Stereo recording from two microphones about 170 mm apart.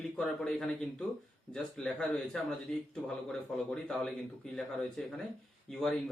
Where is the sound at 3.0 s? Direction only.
5° left (ahead or behind).